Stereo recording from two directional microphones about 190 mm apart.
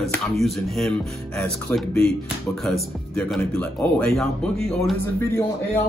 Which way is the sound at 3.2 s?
5° left (ahead or behind).